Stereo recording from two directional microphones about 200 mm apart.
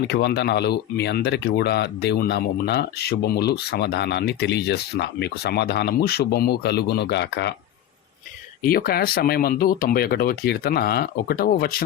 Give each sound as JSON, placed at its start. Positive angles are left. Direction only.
{"t": 0.1, "sound": "speech", "side_deg": 55}
{"t": 8.6, "sound": "speech", "side_deg": 45}